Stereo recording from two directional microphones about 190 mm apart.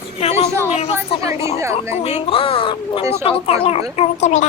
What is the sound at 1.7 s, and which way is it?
A child's voice, 35° left (ahead or behind).